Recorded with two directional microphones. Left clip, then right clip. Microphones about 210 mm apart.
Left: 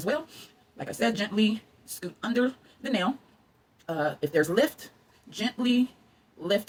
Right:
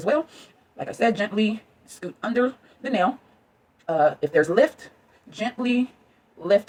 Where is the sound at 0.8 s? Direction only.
20° left (ahead or behind).